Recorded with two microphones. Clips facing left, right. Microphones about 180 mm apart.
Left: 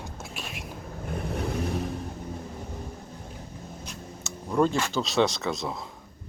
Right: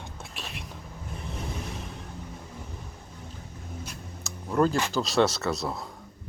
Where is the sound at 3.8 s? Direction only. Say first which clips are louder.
Left 2 dB; centre (ahead or behind).